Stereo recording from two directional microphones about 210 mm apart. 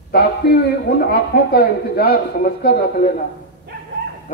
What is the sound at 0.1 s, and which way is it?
A man's voice, 50° left (ahead or behind).